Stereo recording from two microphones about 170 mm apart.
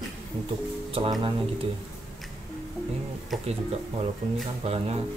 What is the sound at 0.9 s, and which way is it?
Speech, 30° right (ahead or behind).